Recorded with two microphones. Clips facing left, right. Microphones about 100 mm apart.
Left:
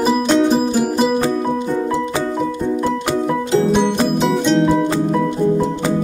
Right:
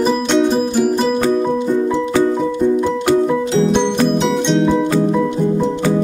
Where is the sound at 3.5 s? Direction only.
5° left (ahead or behind).